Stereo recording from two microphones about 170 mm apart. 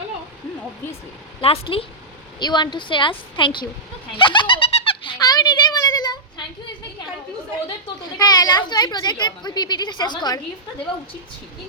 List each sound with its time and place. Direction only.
1.4 s a woman's voice: 35° left (ahead or behind)
4.2 s a sound: 30° left (ahead or behind)
8.2 s a woman's voice: 25° left (ahead or behind)